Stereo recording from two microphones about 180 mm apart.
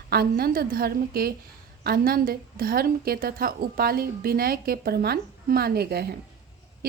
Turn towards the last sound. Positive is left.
turn(degrees=-60)  # may be behind; listen again after turning